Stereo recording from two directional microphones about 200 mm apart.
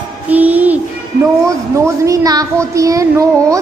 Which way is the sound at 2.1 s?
15° right (ahead or behind).